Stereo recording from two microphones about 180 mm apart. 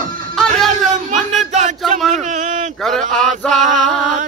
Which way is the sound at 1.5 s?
40° right (ahead or behind).